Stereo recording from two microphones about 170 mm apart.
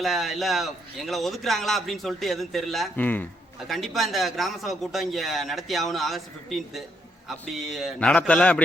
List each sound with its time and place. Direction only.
0.0 s speech: centre (ahead or behind)